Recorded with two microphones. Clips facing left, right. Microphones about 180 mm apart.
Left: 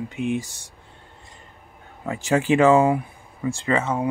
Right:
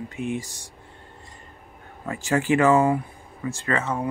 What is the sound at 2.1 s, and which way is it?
Speech, 20° left (ahead or behind).